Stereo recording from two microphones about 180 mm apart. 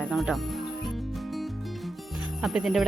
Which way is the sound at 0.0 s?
Centre (ahead or behind).